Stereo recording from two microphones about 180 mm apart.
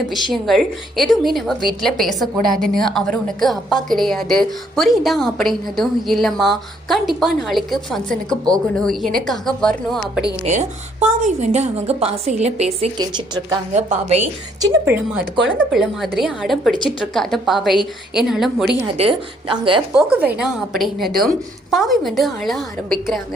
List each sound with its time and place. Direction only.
0.1 s a woman's voice: centre (ahead or behind)
10.4 s a woman's voice: 40° right (ahead or behind)
13.0 s a woman's voice: 25° right (ahead or behind)
13.7 s a woman's voice: 40° right (ahead or behind)
14.6 s a woman's voice: 10° right (ahead or behind)
15.5 s a woman's voice: centre (ahead or behind)
18.9 s a woman's voice: 30° right (ahead or behind)
19.9 s a woman's voice: 5° right (ahead or behind)